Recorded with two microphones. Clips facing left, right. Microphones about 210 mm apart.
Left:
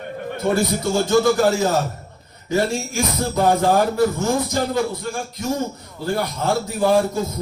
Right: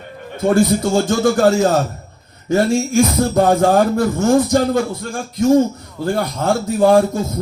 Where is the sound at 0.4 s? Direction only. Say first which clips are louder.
Right 6 dB; 50° right (ahead or behind).